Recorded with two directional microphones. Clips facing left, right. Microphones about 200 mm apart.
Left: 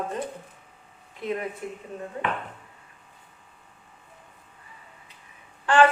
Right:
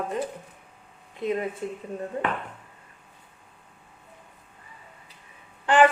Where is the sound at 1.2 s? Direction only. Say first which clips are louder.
Right 3 dB; 20° right (ahead or behind).